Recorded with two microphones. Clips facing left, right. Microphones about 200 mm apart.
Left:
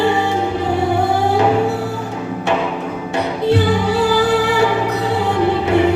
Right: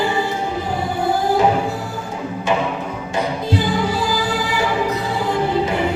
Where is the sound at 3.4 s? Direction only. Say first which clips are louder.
Left 8 dB; 65° left (ahead or behind).